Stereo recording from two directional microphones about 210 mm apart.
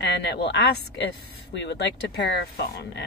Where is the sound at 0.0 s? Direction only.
50° left (ahead or behind).